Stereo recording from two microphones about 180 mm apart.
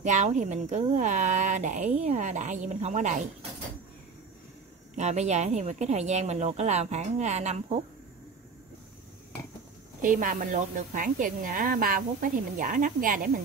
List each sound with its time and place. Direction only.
0.0 s a woman's voice: 40° right (ahead or behind)
4.9 s a woman's voice: 40° right (ahead or behind)
10.0 s a woman's voice: 45° right (ahead or behind)